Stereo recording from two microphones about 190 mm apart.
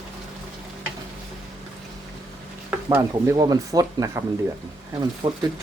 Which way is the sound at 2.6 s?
10° right (ahead or behind).